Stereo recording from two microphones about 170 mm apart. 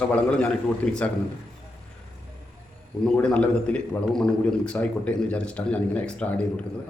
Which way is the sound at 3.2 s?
5° left (ahead or behind).